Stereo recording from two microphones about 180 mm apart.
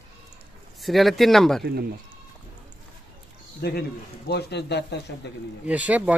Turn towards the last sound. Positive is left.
turn(degrees=-10)  # may be behind; listen again after turning